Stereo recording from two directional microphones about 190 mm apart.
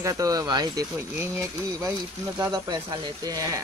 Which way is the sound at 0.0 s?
15° right (ahead or behind).